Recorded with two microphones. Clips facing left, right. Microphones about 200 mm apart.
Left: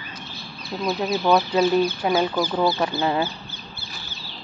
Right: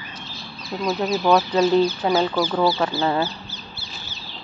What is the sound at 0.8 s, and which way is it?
Speech, 10° left (ahead or behind).